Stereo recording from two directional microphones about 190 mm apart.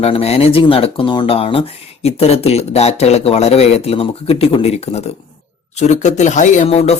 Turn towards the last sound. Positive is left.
turn(degrees=35)  # may be behind; listen again after turning